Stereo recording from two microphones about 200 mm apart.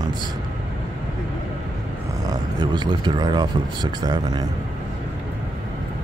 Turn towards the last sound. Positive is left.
turn(degrees=-20)  # may be behind; listen again after turning